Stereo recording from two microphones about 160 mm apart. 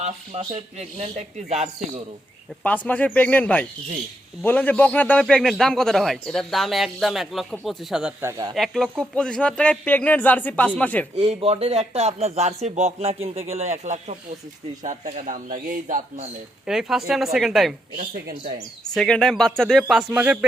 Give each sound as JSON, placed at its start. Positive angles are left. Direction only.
{"t": 0.0, "sound": "speech", "side_deg": -45}
{"t": 2.6, "sound": "a man's voice", "side_deg": 10}
{"t": 8.2, "sound": "speech", "side_deg": -20}
{"t": 8.5, "sound": "speech", "side_deg": 0}
{"t": 11.2, "sound": "speech", "side_deg": -40}
{"t": 16.6, "sound": "a man's voice", "side_deg": -5}
{"t": 18.1, "sound": "speech", "side_deg": -70}
{"t": 18.9, "sound": "a man's voice", "side_deg": 5}